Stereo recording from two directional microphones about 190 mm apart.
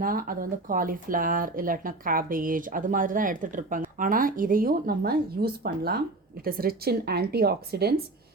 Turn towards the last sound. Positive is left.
turn(degrees=-55)  # may be behind; listen again after turning